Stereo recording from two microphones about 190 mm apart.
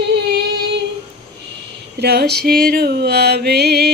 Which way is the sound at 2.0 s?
60° right (ahead or behind).